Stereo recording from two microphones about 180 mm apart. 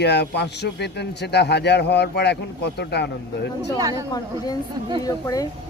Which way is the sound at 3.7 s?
20° right (ahead or behind).